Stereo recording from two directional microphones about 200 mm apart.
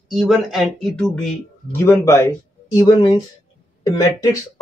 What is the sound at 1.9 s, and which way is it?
Speech, 15° left (ahead or behind).